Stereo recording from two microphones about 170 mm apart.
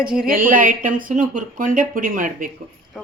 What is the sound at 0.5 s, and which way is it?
Speech, 55° right (ahead or behind).